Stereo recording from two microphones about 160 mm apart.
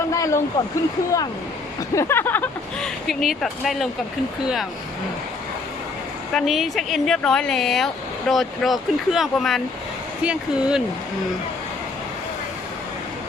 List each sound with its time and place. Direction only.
0.1 s speech: 20° left (ahead or behind)
2.0 s a sound: 15° left (ahead or behind)
3.1 s speech: centre (ahead or behind)
6.3 s speech: centre (ahead or behind)